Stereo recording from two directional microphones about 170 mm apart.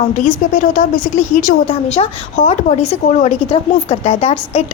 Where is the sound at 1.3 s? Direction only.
50° left (ahead or behind).